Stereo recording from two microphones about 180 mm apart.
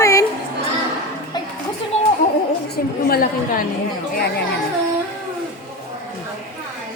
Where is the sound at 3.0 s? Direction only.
55° left (ahead or behind).